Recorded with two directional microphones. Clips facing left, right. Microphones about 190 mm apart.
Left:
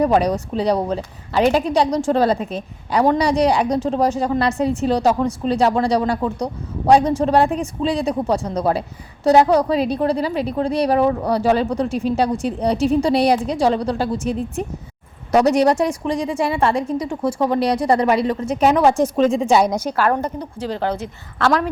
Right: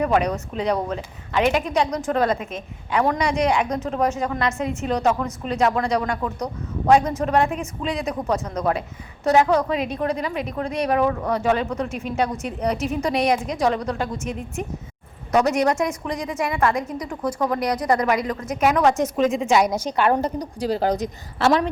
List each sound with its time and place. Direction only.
0.0 s a woman's voice: 35° left (ahead or behind)
19.9 s a woman's voice: 20° right (ahead or behind)
20.7 s a woman's voice: 40° right (ahead or behind)
21.4 s a woman's voice: 5° right (ahead or behind)